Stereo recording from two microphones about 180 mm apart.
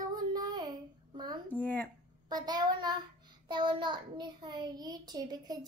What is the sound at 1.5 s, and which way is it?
Speech, 10° left (ahead or behind).